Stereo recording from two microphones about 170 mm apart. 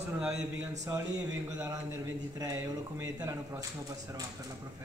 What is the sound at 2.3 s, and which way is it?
Speech, 20° right (ahead or behind).